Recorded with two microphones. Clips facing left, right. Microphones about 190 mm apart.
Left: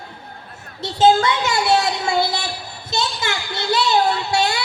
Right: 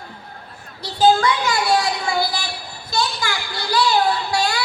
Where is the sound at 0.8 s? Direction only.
25° left (ahead or behind).